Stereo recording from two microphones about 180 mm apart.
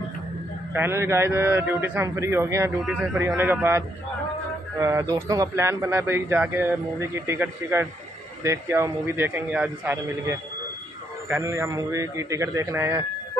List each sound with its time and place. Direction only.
0.7 s speech: 15° right (ahead or behind)
11.2 s speech: 15° right (ahead or behind)